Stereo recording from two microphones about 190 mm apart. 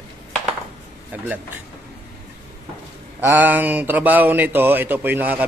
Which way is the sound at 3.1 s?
10° right (ahead or behind).